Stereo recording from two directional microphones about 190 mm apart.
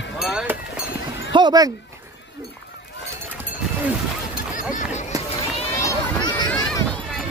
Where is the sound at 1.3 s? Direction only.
20° right (ahead or behind).